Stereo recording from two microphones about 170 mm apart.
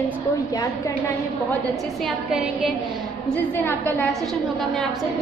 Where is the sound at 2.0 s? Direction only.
Centre (ahead or behind).